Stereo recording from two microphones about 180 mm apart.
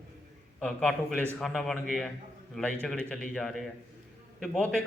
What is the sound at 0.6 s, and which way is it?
Speech, 5° left (ahead or behind).